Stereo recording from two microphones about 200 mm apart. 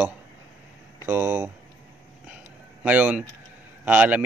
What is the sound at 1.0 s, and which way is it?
Speech, 10° right (ahead or behind).